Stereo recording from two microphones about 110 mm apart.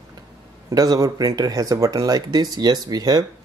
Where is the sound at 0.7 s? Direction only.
35° right (ahead or behind).